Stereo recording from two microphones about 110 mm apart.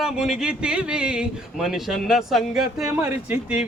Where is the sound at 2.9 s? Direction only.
20° right (ahead or behind).